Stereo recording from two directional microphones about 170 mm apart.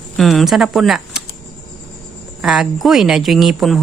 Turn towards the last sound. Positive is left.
turn(degrees=0)  # may be behind; listen again after turning